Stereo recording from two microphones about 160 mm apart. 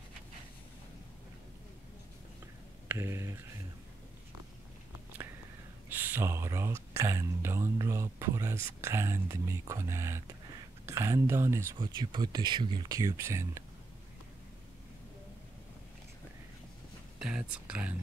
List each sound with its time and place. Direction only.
2.9 s speech: 15° right (ahead or behind)
5.9 s speech: 10° right (ahead or behind)
17.2 s speech: 5° right (ahead or behind)